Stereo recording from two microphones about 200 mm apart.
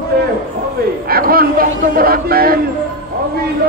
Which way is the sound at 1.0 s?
50° right (ahead or behind).